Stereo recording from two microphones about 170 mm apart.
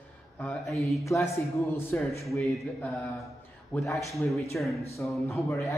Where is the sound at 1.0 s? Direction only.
20° left (ahead or behind).